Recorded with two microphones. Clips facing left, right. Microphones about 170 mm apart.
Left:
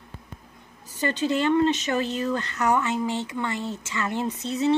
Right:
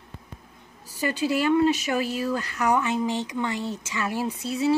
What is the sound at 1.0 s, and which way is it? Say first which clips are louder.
Speech: even; 10° right (ahead or behind).